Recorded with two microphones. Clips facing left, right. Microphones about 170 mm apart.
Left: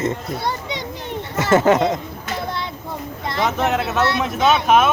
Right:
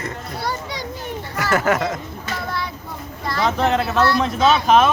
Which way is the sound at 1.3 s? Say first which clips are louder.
Left 5 dB; 20° left (ahead or behind).